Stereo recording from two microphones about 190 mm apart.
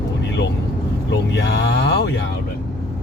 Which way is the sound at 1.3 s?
65° left (ahead or behind).